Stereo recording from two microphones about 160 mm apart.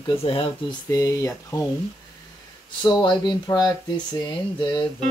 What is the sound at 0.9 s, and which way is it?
Speech, 20° left (ahead or behind).